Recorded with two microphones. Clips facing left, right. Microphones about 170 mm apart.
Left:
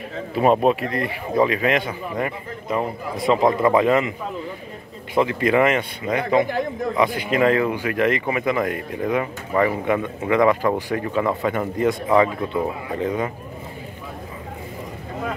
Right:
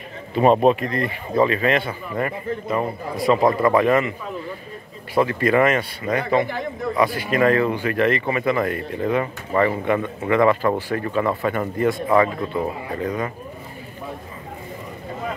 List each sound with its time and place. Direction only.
0.3 s speech: 5° left (ahead or behind)
5.1 s speech: 20° left (ahead or behind)